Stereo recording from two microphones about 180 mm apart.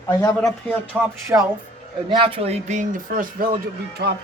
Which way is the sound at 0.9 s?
10° right (ahead or behind).